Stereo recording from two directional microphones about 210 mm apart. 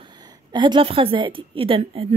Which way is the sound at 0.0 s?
20° right (ahead or behind).